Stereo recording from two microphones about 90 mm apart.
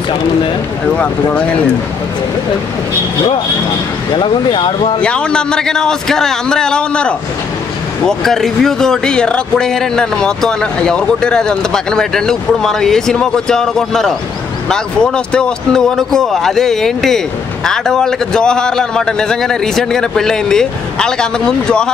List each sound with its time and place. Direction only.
0.9 s speech: 15° left (ahead or behind)
4.2 s speech: 70° left (ahead or behind)
5.0 s speech: 10° left (ahead or behind)